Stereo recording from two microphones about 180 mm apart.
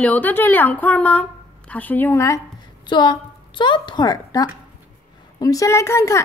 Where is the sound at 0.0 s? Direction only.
10° left (ahead or behind).